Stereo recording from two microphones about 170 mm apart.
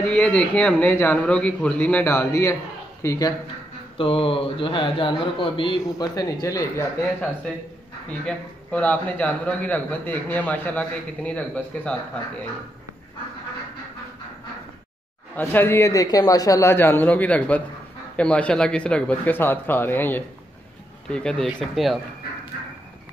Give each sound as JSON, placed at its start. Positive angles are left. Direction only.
{"t": 0.0, "sound": "a man's voice", "side_deg": 5}
{"t": 4.0, "sound": "a man's voice", "side_deg": 35}
{"t": 8.3, "sound": "a man's voice", "side_deg": 10}
{"t": 15.3, "sound": "a man's voice", "side_deg": 10}